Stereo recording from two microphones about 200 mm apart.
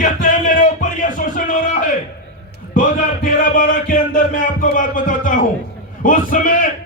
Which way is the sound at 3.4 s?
45° left (ahead or behind).